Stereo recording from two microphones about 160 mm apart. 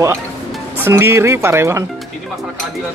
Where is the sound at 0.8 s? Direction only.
15° right (ahead or behind).